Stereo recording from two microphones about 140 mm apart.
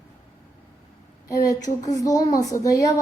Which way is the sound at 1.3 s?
25° left (ahead or behind).